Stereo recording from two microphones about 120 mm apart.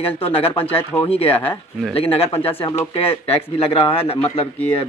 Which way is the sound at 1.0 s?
55° left (ahead or behind).